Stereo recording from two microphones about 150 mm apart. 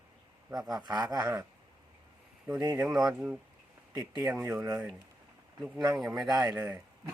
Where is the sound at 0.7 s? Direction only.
25° right (ahead or behind).